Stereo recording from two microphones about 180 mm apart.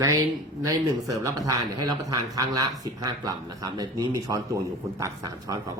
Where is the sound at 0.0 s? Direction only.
15° right (ahead or behind).